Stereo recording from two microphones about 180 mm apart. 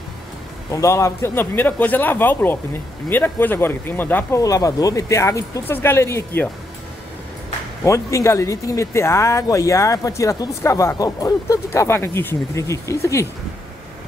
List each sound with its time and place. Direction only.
0.7 s speech: 15° left (ahead or behind)
7.8 s speech: 15° left (ahead or behind)